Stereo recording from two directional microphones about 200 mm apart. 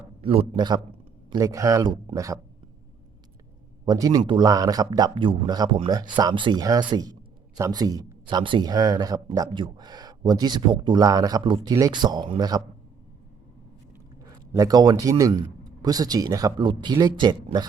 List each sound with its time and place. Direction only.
0.2 s speech: 30° right (ahead or behind)
3.8 s speech: 20° right (ahead or behind)
14.3 s a man's voice: 20° right (ahead or behind)